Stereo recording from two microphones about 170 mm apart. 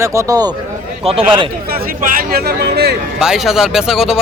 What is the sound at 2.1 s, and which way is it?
Speech, 60° right (ahead or behind).